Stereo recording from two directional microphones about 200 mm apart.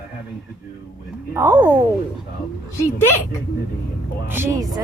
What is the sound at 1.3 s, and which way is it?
Speech, 10° right (ahead or behind).